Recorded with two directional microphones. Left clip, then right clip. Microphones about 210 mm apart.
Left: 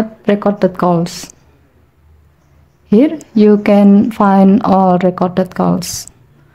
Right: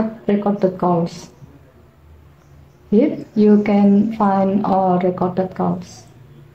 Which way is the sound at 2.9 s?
45° left (ahead or behind).